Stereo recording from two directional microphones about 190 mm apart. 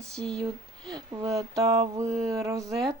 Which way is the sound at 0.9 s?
25° right (ahead or behind).